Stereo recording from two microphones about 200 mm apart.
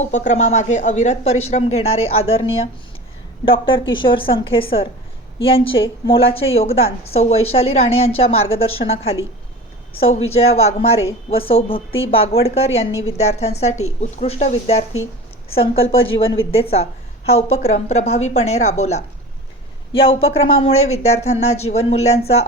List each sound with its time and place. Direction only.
0.0 s a woman's voice: 35° left (ahead or behind)